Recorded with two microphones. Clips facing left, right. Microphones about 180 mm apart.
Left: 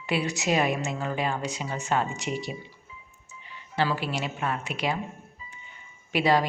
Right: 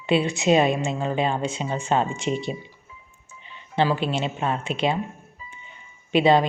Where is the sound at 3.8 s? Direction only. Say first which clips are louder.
Right 5 dB; 25° right (ahead or behind).